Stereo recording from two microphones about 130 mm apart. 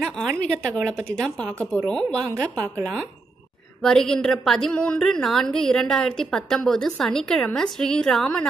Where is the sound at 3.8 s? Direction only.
5° left (ahead or behind).